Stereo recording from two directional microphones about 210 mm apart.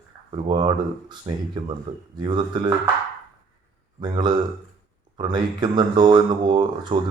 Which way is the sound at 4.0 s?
20° right (ahead or behind).